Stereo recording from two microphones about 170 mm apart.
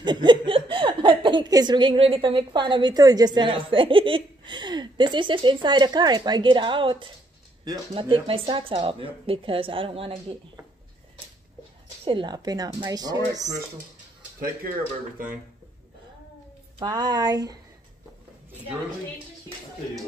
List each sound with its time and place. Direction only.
0.0 s speech: 25° right (ahead or behind)
12.0 s speech: 30° right (ahead or behind)
16.8 s speech: 25° right (ahead or behind)